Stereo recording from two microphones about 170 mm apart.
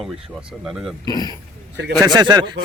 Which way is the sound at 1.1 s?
25° left (ahead or behind).